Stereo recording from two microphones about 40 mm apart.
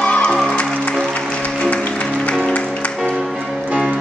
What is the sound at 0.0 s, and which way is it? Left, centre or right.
Music, left.